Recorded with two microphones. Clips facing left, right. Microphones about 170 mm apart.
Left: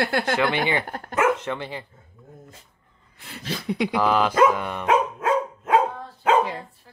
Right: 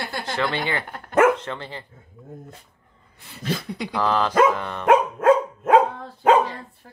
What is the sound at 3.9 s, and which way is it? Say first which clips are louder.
Speech: right 1 dB; 10° left (ahead or behind).